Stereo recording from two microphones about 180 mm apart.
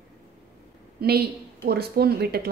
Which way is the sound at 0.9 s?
60° right (ahead or behind).